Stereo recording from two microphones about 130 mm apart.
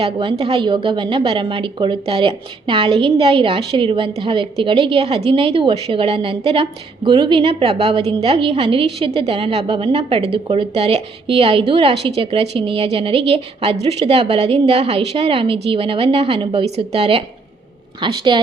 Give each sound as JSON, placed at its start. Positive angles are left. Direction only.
{"t": 0.0, "sound": "a woman's voice", "side_deg": -45}